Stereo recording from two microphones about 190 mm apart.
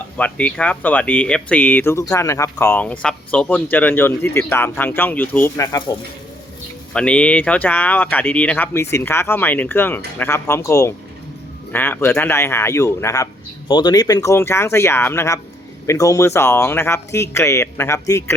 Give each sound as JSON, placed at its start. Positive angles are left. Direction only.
{"t": 0.2, "sound": "speech", "side_deg": 5}
{"t": 6.9, "sound": "speech", "side_deg": 5}